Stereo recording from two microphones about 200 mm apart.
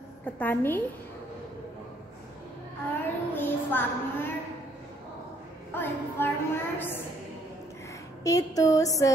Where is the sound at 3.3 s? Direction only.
10° left (ahead or behind).